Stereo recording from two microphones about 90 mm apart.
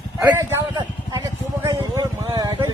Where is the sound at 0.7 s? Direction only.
50° right (ahead or behind).